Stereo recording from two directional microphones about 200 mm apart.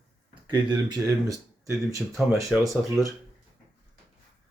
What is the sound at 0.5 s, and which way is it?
Speech, 20° right (ahead or behind).